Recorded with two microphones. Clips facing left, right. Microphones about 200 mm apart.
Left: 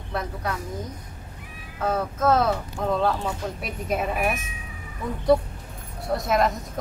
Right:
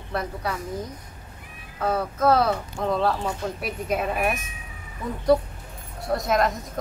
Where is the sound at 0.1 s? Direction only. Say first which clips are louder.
Right 1 dB; 5° right (ahead or behind).